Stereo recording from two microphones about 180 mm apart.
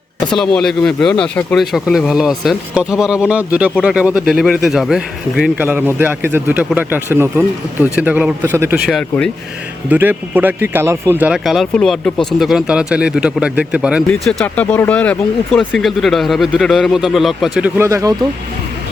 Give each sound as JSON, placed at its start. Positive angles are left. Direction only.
{"t": 0.3, "sound": "a man's voice", "side_deg": 5}
{"t": 8.9, "sound": "speech", "side_deg": 5}
{"t": 9.9, "sound": "speech", "side_deg": -10}
{"t": 17.7, "sound": "a man's voice", "side_deg": -15}